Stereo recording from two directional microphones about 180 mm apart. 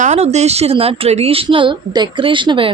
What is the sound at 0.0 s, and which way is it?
A woman's voice, 40° right (ahead or behind).